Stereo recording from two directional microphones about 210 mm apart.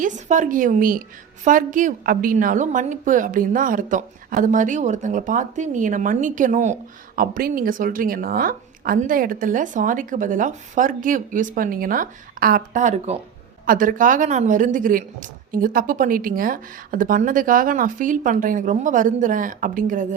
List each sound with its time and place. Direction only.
0.0 s a woman's voice: 40° right (ahead or behind)